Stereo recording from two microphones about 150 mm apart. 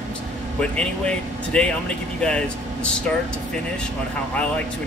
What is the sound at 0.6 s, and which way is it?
Speech, 5° left (ahead or behind).